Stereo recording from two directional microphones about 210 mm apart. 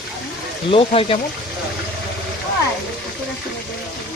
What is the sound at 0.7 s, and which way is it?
Speech, 25° left (ahead or behind).